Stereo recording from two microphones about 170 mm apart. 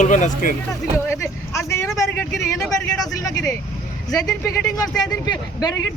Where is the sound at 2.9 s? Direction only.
20° left (ahead or behind).